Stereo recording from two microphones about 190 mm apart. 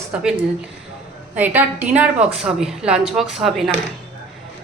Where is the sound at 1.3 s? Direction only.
10° right (ahead or behind).